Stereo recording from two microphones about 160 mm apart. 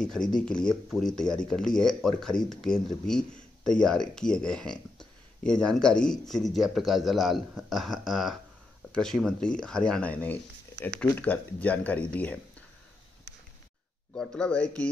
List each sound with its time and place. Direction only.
0.0 s speech: 5° left (ahead or behind)
14.1 s speech: 5° left (ahead or behind)